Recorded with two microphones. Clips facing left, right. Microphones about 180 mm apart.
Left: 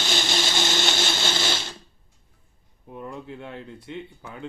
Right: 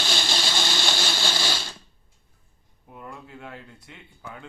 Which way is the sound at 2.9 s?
30° left (ahead or behind).